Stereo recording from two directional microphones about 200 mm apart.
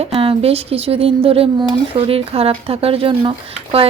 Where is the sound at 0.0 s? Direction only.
25° right (ahead or behind).